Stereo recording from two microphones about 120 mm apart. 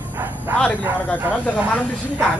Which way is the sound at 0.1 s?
20° right (ahead or behind).